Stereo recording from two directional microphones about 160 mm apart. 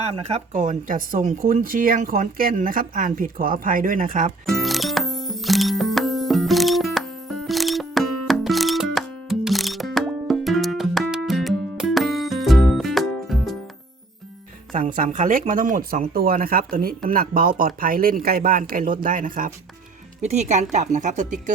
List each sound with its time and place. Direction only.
0.0 s speech: 40° right (ahead or behind); by 4.3 s 60° right (ahead or behind)
4.4 s music: centre (ahead or behind)
14.8 s speech: 55° right (ahead or behind)
20.2 s a woman's voice: 45° right (ahead or behind)